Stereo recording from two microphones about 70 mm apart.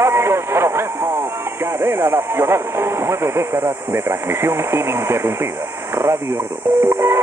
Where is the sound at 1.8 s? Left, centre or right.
Right.